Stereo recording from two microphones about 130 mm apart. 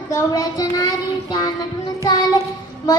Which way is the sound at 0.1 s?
30° left (ahead or behind).